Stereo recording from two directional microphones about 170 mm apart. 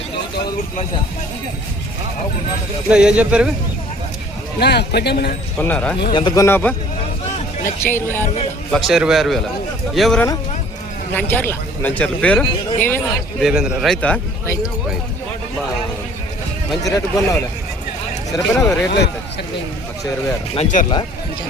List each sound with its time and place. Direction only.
2.9 s a man's voice: 5° right (ahead or behind)
4.6 s speech: 75° left (ahead or behind)
5.5 s a man's voice: 10° left (ahead or behind)
6.1 s a man's voice: 25° left (ahead or behind)
8.7 s a man's voice: centre (ahead or behind)
13.4 s a man's voice: 5° right (ahead or behind)
16.8 s speech: 20° left (ahead or behind)
20.6 s speech: 45° left (ahead or behind)